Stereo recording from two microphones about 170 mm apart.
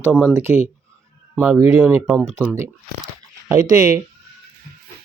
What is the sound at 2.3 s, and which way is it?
Speech, 15° right (ahead or behind).